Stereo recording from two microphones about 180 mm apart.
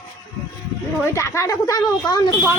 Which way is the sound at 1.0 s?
15° left (ahead or behind).